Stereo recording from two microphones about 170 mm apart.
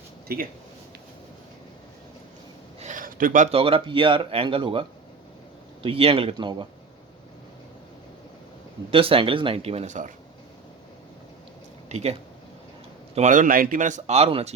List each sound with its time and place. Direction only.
0.3 s speech: 60° right (ahead or behind)
2.8 s a sound: 50° right (ahead or behind)
3.5 s speech: 35° right (ahead or behind)
8.9 s speech: 30° right (ahead or behind)
11.9 s speech: 40° right (ahead or behind)
13.1 s speech: 45° right (ahead or behind)